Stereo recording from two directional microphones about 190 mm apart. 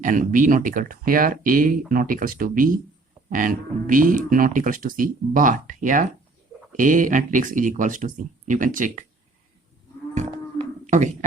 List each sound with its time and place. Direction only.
0.0 s speech: 45° right (ahead or behind)
10.8 s speech: 40° right (ahead or behind)